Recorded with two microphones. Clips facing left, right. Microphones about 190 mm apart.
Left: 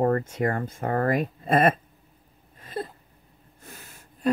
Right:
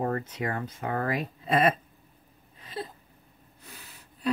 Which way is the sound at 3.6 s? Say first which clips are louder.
Left 3 dB; 50° left (ahead or behind).